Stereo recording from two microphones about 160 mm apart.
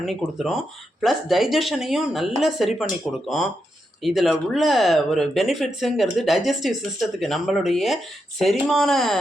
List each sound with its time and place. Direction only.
0.0 s speech: centre (ahead or behind)